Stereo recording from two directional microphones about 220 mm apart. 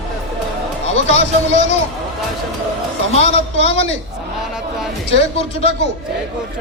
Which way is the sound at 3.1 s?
30° left (ahead or behind).